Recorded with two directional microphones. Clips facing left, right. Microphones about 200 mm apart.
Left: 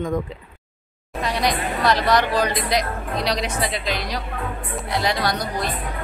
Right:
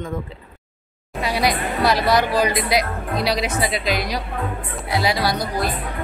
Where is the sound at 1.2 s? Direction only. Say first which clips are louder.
Right 2 dB; 10° right (ahead or behind).